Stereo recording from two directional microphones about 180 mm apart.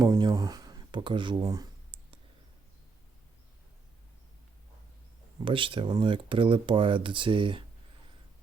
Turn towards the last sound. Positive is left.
turn(degrees=-30)  # may be behind; listen again after turning